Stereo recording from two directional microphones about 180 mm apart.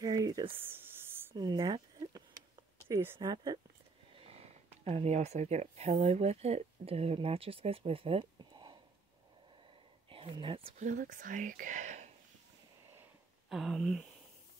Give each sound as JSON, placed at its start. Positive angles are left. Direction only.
{"t": 0.0, "sound": "a sound", "side_deg": -20}
{"t": 2.9, "sound": "speech", "side_deg": -10}
{"t": 3.2, "sound": "speech", "side_deg": -25}
{"t": 4.2, "sound": "speech", "side_deg": -35}
{"t": 10.0, "sound": "speech", "side_deg": -30}
{"t": 10.8, "sound": "speech", "side_deg": -45}
{"t": 13.5, "sound": "speech", "side_deg": 0}